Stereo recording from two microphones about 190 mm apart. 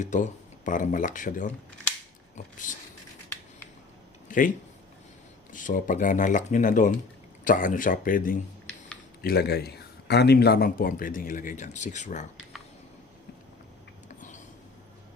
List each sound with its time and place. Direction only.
0.0 s speech: 40° left (ahead or behind)
4.3 s speech: 45° left (ahead or behind)
5.5 s speech: 45° left (ahead or behind)
14.2 s a sound: 40° left (ahead or behind)